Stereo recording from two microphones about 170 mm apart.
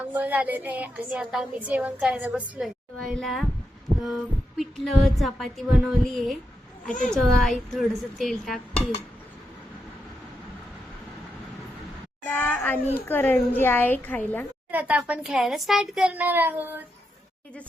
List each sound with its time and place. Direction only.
0.1 s speech: 10° right (ahead or behind)
3.1 s music: centre (ahead or behind)
12.2 s a woman's voice: 10° left (ahead or behind)
14.7 s speech: 10° right (ahead or behind)